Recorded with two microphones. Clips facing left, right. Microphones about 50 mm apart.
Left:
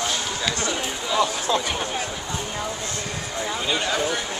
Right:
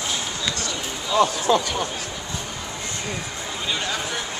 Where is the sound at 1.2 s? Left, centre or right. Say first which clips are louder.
Right 5 dB; right.